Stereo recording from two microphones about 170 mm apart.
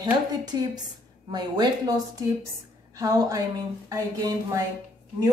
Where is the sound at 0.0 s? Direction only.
25° right (ahead or behind).